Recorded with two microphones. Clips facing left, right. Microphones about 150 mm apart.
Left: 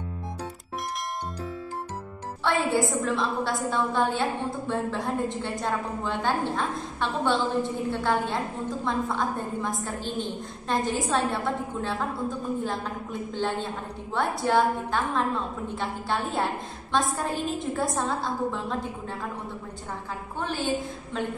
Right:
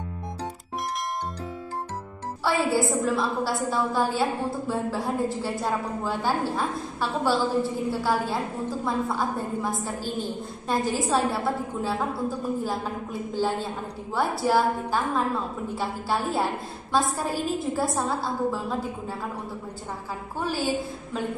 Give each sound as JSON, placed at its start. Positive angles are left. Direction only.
{"t": 2.4, "sound": "a woman's voice", "side_deg": -5}
{"t": 20.3, "sound": "a woman's voice", "side_deg": -5}